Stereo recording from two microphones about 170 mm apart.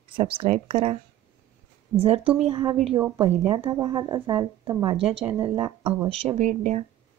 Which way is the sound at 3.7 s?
25° right (ahead or behind).